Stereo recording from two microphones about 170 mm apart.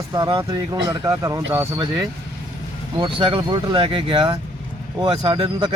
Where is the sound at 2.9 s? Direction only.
30° right (ahead or behind).